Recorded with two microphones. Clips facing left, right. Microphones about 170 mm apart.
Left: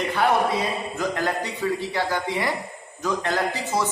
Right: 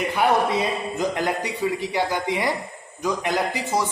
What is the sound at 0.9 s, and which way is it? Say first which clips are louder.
A man's voice: right 1 dB; 15° right (ahead or behind).